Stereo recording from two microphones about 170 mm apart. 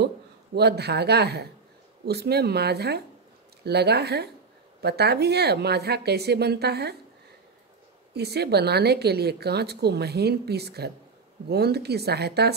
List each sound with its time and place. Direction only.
0.6 s a woman's voice: 75° right (ahead or behind)
8.1 s a woman's voice: 70° right (ahead or behind)